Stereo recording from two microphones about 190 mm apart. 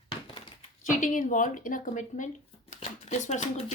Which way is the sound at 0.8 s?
40° left (ahead or behind).